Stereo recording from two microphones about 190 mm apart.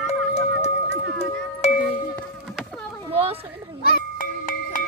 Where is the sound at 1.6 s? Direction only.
35° left (ahead or behind).